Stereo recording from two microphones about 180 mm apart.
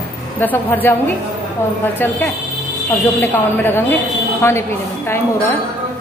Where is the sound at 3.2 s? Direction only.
15° left (ahead or behind).